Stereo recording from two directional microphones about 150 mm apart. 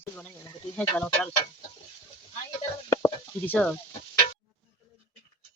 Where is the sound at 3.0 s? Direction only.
10° left (ahead or behind).